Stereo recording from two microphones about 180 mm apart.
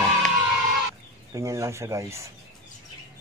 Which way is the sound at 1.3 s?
15° right (ahead or behind).